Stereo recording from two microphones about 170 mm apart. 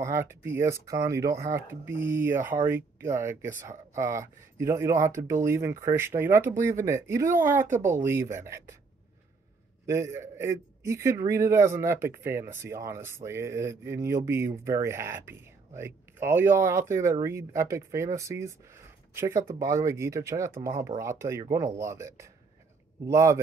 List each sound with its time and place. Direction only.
0.0 s a man's voice: 15° right (ahead or behind)
9.8 s a man's voice: 15° right (ahead or behind)